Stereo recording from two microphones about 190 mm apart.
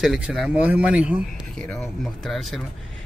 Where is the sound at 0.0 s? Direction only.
5° right (ahead or behind).